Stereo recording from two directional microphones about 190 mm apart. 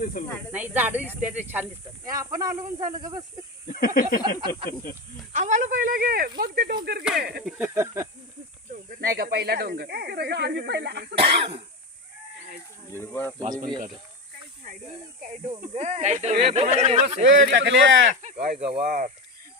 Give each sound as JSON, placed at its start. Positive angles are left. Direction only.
{"t": 0.0, "sound": "speech", "side_deg": 45}
{"t": 0.5, "sound": "speech", "side_deg": -10}
{"t": 3.7, "sound": "snake", "side_deg": 50}
{"t": 5.3, "sound": "speech", "side_deg": -40}
{"t": 7.4, "sound": "speech", "side_deg": -10}
{"t": 9.0, "sound": "speech", "side_deg": -55}
{"t": 11.2, "sound": "speech", "side_deg": -30}
{"t": 12.9, "sound": "speech", "side_deg": 15}
{"t": 13.4, "sound": "speech", "side_deg": -45}
{"t": 15.4, "sound": "speech", "side_deg": -35}
{"t": 17.2, "sound": "speech", "side_deg": -70}
{"t": 18.1, "sound": "speech", "side_deg": -40}